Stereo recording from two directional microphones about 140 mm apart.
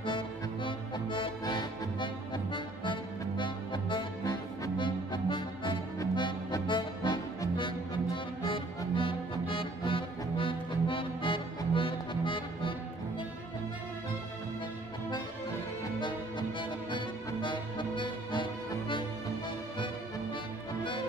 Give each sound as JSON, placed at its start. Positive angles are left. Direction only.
{"t": 0.7, "sound": "music", "side_deg": 35}
{"t": 16.0, "sound": "music", "side_deg": 35}